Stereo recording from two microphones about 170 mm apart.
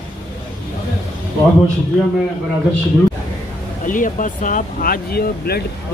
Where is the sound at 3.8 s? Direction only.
50° left (ahead or behind).